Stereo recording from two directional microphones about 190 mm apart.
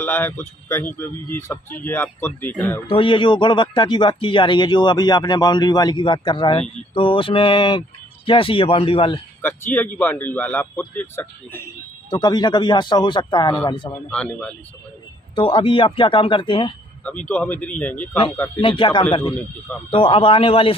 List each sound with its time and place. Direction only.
0.0 s speech: 15° left (ahead or behind)
2.9 s a man's voice: 25° left (ahead or behind)
9.4 s speech: 10° left (ahead or behind)
12.1 s a man's voice: 20° left (ahead or behind)
14.1 s speech: 5° left (ahead or behind)
15.3 s a man's voice: 30° left (ahead or behind)
17.0 s speech: 5° left (ahead or behind)
18.6 s a man's voice: 25° left (ahead or behind)